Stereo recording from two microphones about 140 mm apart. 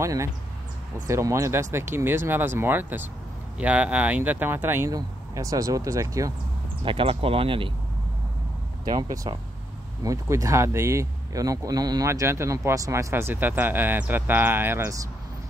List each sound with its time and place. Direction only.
0.0 s speech: 20° right (ahead or behind)
6.8 s speech: 40° right (ahead or behind)
8.8 s speech: 30° right (ahead or behind); by 15.0 s 15° right (ahead or behind)